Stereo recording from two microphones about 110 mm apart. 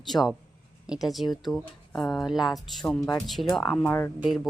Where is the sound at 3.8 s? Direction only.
20° left (ahead or behind).